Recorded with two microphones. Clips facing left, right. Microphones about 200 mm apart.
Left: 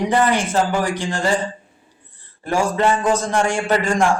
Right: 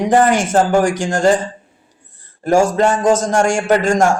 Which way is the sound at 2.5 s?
45° right (ahead or behind).